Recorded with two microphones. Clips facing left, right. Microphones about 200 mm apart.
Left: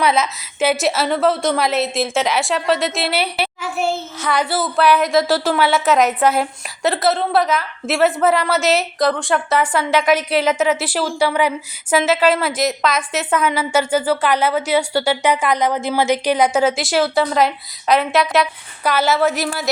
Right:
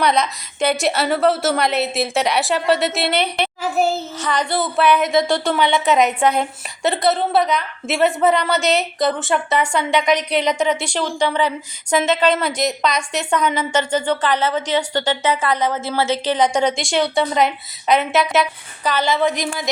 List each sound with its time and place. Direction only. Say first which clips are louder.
0.0 s a woman's voice: even; 5° left (ahead or behind)
3.6 s a sound: right 4 dB; 40° right (ahead or behind)
4.2 s a woman's voice: left 2 dB; 10° left (ahead or behind)